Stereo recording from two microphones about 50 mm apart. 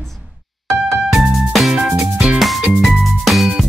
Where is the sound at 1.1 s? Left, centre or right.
Centre.